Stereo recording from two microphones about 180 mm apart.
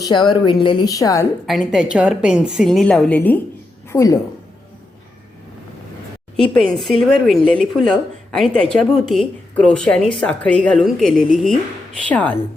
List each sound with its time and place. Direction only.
0.0 s a woman's voice: 25° left (ahead or behind)
1.5 s a woman's voice: centre (ahead or behind); by 4.2 s 15° left (ahead or behind)
6.3 s a woman's voice: 5° left (ahead or behind)